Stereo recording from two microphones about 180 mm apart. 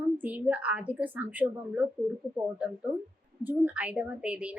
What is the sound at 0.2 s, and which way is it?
A woman's voice, 10° right (ahead or behind).